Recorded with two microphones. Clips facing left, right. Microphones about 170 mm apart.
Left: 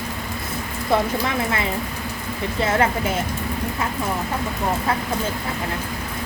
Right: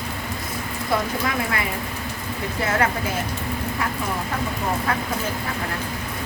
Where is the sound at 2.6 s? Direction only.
25° left (ahead or behind).